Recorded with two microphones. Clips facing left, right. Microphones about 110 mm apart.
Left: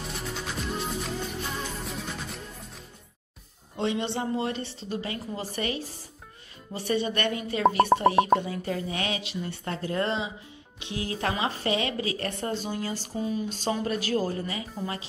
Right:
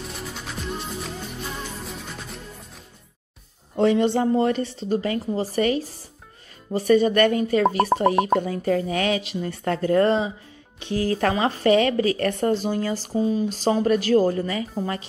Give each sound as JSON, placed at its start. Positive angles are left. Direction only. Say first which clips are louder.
{"t": 0.1, "sound": "music", "louder": "even", "side_deg": 0}
{"t": 3.7, "sound": "speech", "louder": "right 10 dB", "side_deg": -40}
{"t": 8.4, "sound": "speech", "louder": "right 8 dB", "side_deg": -50}